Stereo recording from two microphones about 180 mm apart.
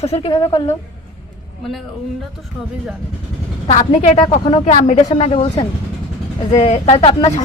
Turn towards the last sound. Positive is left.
turn(degrees=40)  # may be behind; listen again after turning